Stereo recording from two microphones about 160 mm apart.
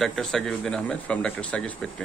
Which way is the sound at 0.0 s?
Centre (ahead or behind).